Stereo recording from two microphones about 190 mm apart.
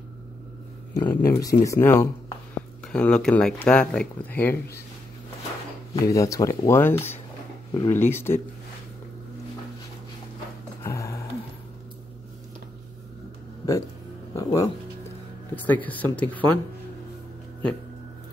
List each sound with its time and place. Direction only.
0.9 s speech: 15° left (ahead or behind)
5.9 s speech: 15° left (ahead or behind)
10.8 s music: 15° left (ahead or behind)
13.6 s music: 20° left (ahead or behind)
15.5 s speech: 10° left (ahead or behind)